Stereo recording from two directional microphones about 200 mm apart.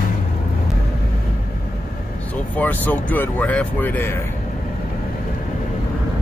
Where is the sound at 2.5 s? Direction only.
10° left (ahead or behind).